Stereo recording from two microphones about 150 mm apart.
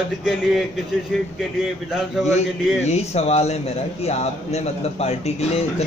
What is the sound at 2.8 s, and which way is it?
A man's voice, 45° left (ahead or behind).